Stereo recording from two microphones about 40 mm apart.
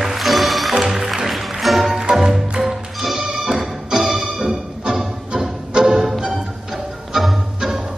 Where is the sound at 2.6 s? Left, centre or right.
Centre.